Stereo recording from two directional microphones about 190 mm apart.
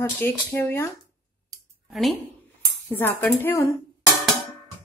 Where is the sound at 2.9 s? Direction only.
10° left (ahead or behind).